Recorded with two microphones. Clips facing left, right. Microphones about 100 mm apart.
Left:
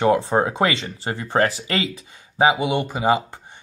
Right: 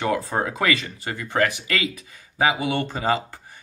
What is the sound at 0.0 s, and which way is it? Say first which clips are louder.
Speech: left 6 dB; 25° left (ahead or behind).